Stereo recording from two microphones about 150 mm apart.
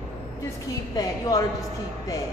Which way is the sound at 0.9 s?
25° left (ahead or behind).